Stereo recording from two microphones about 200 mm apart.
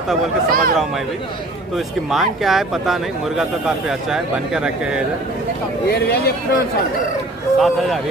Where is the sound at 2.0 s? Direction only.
Centre (ahead or behind).